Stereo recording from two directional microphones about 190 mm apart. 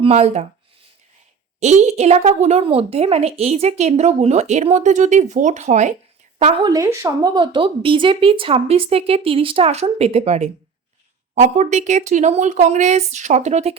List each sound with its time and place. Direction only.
0.0 s a woman's voice: 35° right (ahead or behind)
1.5 s a woman's voice: 35° right (ahead or behind)
6.7 s a woman's voice: 15° right (ahead or behind); by 13.7 s 35° right (ahead or behind)